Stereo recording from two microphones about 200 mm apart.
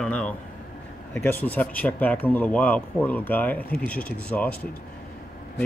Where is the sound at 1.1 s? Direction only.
10° left (ahead or behind).